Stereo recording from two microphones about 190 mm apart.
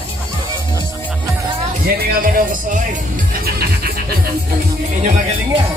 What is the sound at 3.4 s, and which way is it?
Neigh, 55° right (ahead or behind).